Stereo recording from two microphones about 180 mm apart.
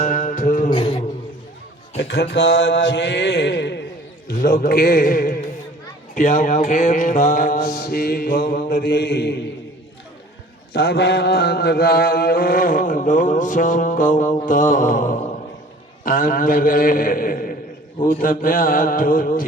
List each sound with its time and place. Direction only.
0.0 s music: 45° left (ahead or behind)
0.7 s a sound: 25° left (ahead or behind)
2.0 s mantra: 75° left (ahead or behind)
4.4 s mantra: 55° left (ahead or behind)
10.7 s mantra: 60° left (ahead or behind)